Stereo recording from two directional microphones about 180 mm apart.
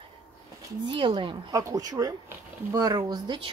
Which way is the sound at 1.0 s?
25° right (ahead or behind).